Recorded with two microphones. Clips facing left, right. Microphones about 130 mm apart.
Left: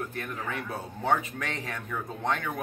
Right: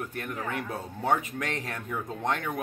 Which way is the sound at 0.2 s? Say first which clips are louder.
Right 1 dB; 15° right (ahead or behind).